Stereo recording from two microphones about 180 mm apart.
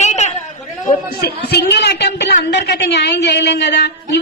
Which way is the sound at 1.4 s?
65° left (ahead or behind).